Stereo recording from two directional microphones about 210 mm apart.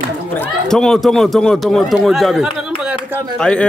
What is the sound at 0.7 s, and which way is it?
A man's voice, centre (ahead or behind).